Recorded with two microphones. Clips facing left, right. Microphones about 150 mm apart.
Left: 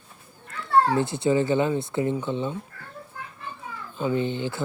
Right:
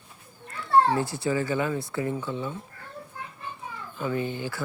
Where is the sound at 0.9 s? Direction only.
20° left (ahead or behind).